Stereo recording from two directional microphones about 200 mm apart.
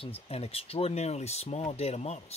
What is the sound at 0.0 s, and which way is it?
Speech, 30° left (ahead or behind).